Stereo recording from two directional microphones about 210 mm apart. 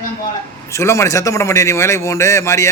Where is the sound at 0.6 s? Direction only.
15° left (ahead or behind).